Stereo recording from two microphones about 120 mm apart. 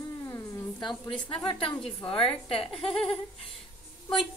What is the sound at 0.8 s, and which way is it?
Speech, 5° left (ahead or behind).